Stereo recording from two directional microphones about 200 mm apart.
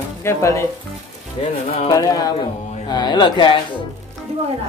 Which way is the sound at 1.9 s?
15° left (ahead or behind).